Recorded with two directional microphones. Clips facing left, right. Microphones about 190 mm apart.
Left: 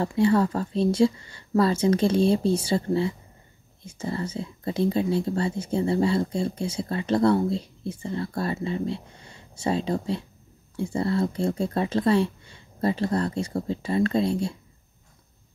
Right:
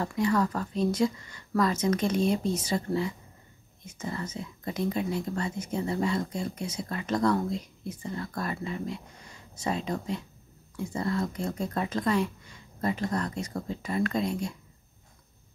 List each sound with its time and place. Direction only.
0.0 s speech: 30° left (ahead or behind)